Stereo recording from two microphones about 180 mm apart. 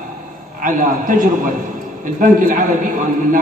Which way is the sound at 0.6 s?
45° right (ahead or behind).